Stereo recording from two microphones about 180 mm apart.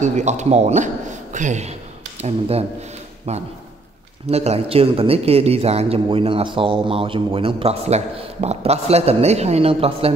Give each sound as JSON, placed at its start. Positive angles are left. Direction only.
{"t": 0.0, "sound": "speech", "side_deg": -40}